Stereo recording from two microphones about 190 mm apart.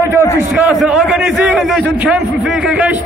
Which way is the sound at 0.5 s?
5° right (ahead or behind).